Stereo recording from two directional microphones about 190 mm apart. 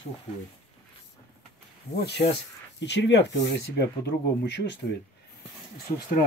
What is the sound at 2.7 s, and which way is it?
Speech, 65° left (ahead or behind).